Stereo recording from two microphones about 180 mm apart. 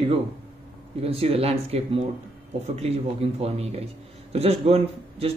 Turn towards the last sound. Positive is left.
turn(degrees=-35)  # may be behind; listen again after turning